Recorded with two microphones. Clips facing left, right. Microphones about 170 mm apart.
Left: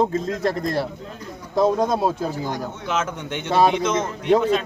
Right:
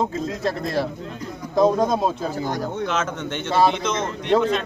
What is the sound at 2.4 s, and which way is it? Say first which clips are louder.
Speech: right 3 dB; 50° right (ahead or behind).